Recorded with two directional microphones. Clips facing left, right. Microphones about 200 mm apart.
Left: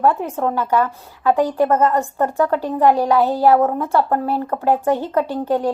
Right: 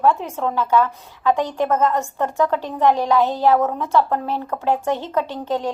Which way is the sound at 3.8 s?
50° left (ahead or behind).